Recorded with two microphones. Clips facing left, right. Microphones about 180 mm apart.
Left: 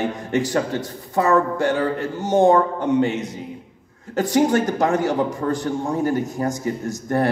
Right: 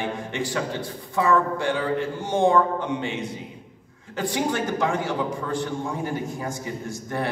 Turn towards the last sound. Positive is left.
turn(degrees=40)  # may be behind; listen again after turning